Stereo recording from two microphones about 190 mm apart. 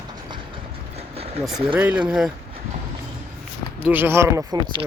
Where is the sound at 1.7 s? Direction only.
10° right (ahead or behind).